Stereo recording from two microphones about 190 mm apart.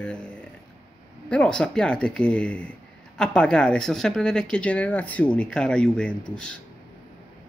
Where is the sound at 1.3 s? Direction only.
5° left (ahead or behind).